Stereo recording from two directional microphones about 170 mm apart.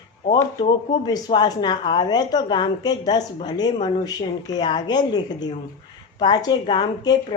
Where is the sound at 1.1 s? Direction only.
25° left (ahead or behind).